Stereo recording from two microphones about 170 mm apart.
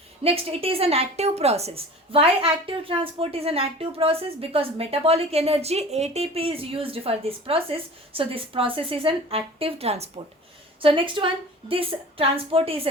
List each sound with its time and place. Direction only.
0.2 s a woman's voice: 35° right (ahead or behind)